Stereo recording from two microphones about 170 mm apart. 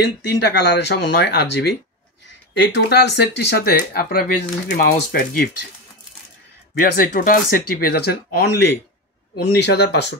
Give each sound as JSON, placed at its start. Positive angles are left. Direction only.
{"t": 0.0, "sound": "speech", "side_deg": 70}
{"t": 6.7, "sound": "speech", "side_deg": 65}
{"t": 9.4, "sound": "speech", "side_deg": 80}